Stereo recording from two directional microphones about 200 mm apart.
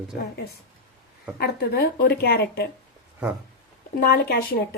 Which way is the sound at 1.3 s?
55° left (ahead or behind).